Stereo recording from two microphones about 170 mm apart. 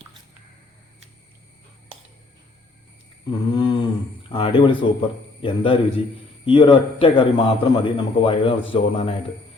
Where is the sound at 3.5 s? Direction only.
30° left (ahead or behind).